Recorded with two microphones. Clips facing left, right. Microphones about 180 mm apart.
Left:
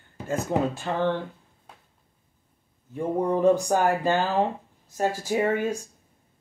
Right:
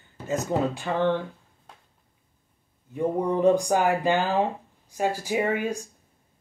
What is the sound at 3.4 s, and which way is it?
Speech, 15° right (ahead or behind).